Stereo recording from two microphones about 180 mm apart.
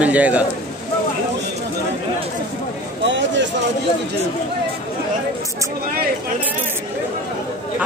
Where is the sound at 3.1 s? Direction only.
85° right.